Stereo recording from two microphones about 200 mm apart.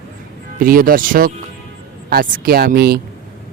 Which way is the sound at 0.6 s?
45° right (ahead or behind).